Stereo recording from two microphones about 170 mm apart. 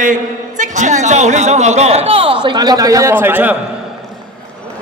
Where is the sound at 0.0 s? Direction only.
50° right (ahead or behind); by 3.5 s 10° right (ahead or behind).